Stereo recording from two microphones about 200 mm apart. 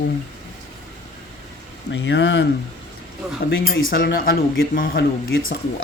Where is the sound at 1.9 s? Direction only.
60° left (ahead or behind).